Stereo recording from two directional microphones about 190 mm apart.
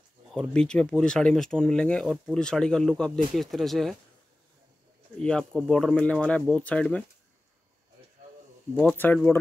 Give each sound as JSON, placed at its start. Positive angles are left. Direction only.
{"t": 0.3, "sound": "speech", "side_deg": 5}
{"t": 5.2, "sound": "speech", "side_deg": 5}
{"t": 8.7, "sound": "speech", "side_deg": 10}